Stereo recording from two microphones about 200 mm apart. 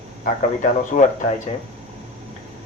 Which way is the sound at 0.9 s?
40° left (ahead or behind).